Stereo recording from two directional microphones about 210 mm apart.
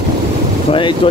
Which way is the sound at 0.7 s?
25° left (ahead or behind).